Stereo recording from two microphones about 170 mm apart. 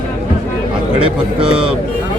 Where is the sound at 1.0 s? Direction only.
30° right (ahead or behind).